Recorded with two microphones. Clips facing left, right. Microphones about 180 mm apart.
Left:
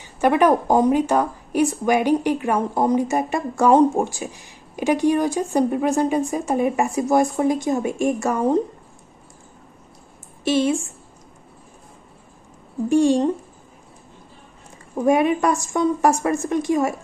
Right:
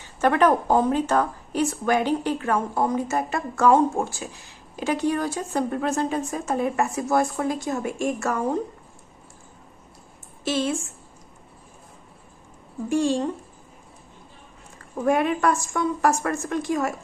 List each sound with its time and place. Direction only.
0.0 s a woman's voice: 10° left (ahead or behind)
10.4 s a woman's voice: 15° left (ahead or behind)
12.9 s a woman's voice: 15° left (ahead or behind)
15.0 s a woman's voice: 15° left (ahead or behind)